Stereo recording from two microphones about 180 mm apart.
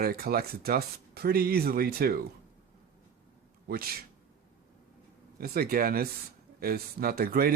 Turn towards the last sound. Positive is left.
turn(degrees=-55)  # may be behind; listen again after turning